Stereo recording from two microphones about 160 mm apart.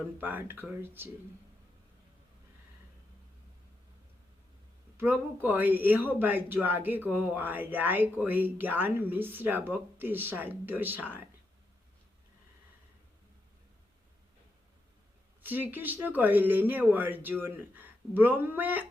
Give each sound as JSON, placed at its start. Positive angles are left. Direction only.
{"t": 0.2, "sound": "speech", "side_deg": -10}
{"t": 4.9, "sound": "speech", "side_deg": -10}
{"t": 15.4, "sound": "speech", "side_deg": -10}